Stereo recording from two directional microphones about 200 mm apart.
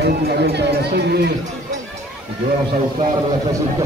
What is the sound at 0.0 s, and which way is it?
Speech, 55° right (ahead or behind).